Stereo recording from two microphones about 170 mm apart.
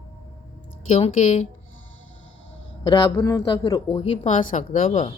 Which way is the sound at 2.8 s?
25° left (ahead or behind).